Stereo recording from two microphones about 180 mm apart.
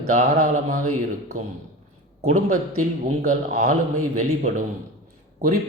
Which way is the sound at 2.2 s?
45° right (ahead or behind).